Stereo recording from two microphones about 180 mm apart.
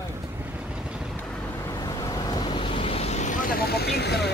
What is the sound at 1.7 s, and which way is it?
Waves, 20° left (ahead or behind).